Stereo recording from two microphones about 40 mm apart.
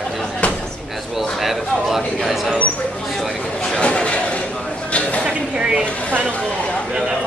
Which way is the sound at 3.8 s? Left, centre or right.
Left.